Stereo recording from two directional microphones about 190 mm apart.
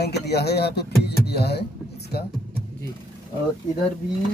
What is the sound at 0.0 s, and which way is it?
Speech, 60° left (ahead or behind).